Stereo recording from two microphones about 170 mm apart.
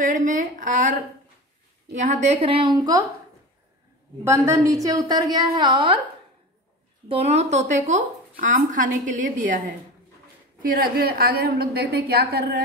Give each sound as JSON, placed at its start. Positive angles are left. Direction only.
{"t": 0.0, "sound": "a woman's voice", "side_deg": -45}
{"t": 2.0, "sound": "a woman's voice", "side_deg": -45}
{"t": 4.2, "sound": "a woman's voice", "side_deg": -15}
{"t": 7.1, "sound": "a woman's voice", "side_deg": -35}
{"t": 10.6, "sound": "a woman's voice", "side_deg": -60}